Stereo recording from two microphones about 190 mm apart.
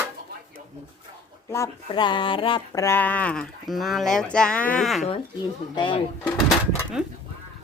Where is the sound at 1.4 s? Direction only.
15° left (ahead or behind).